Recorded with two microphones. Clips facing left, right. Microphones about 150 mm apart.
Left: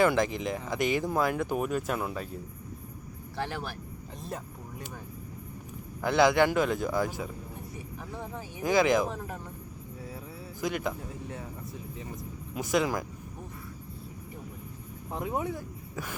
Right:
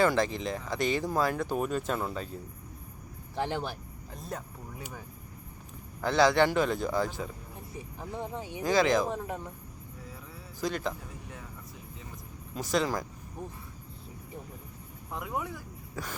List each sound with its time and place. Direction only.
0.0 s speech: 15° left (ahead or behind)
3.3 s speech: 20° right (ahead or behind)
4.3 s speech: centre (ahead or behind)
6.0 s speech: 15° left (ahead or behind)
8.1 s speech: 20° right (ahead or behind)
8.6 s speech: 15° left (ahead or behind)
9.0 s speech: 20° right (ahead or behind)
10.6 s speech: 15° left (ahead or behind)
12.5 s speech: 15° left (ahead or behind)
15.1 s speech: 25° left (ahead or behind)